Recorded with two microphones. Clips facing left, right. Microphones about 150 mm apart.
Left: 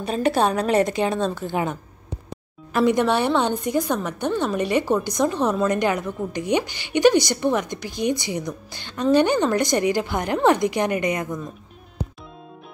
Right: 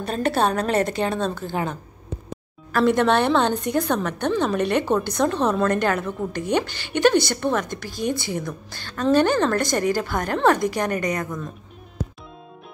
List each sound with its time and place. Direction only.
0.0 s a woman's voice: 10° left (ahead or behind)